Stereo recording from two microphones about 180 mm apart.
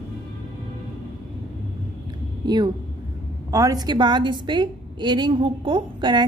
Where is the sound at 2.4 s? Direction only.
25° right (ahead or behind).